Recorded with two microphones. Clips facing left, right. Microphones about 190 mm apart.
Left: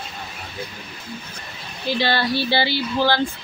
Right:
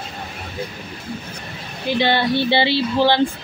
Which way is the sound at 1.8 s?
20° right (ahead or behind).